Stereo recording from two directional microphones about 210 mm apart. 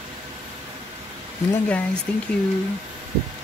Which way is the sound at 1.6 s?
5° left (ahead or behind).